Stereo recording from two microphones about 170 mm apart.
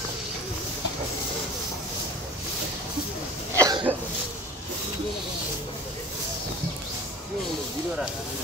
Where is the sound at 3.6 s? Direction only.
25° right (ahead or behind).